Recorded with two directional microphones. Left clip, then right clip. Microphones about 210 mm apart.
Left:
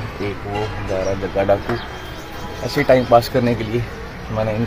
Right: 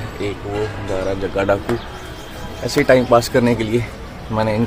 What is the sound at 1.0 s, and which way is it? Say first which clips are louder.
Speech: even; 10° right (ahead or behind).